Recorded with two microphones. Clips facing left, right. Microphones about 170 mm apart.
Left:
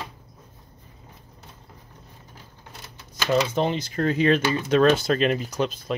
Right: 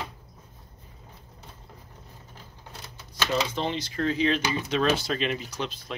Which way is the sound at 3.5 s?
50° left (ahead or behind).